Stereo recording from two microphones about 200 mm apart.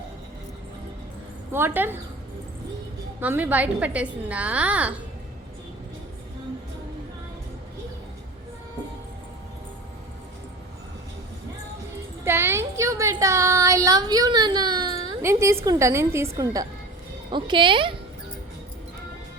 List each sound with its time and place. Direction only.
1.5 s a woman's voice: 10° right (ahead or behind)
3.2 s a woman's voice: 10° right (ahead or behind)
12.2 s a sound: 10° right (ahead or behind)
15.6 s a woman's voice: 15° right (ahead or behind)